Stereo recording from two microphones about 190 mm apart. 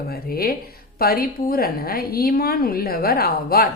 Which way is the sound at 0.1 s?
55° left (ahead or behind).